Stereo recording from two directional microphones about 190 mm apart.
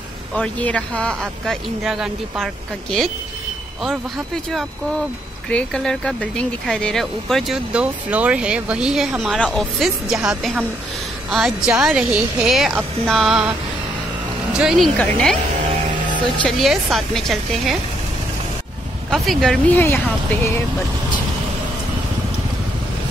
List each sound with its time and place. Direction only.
0.3 s speech: 5° left (ahead or behind)
5.5 s speech: 5° left (ahead or behind)
14.6 s speech: centre (ahead or behind)
16.4 s speech: centre (ahead or behind)
19.0 s speech: centre (ahead or behind)